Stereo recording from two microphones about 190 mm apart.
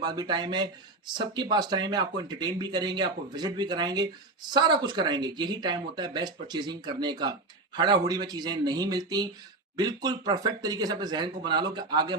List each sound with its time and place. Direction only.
0.0 s speech: 20° right (ahead or behind)